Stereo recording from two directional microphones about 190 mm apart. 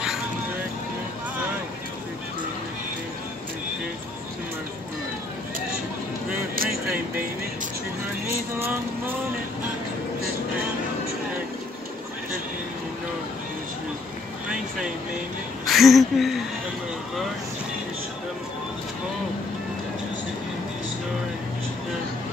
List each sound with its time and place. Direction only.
6.5 s vehicle: 50° right (ahead or behind)
8.5 s vehicle: 15° right (ahead or behind)
15.6 s a sound: centre (ahead or behind)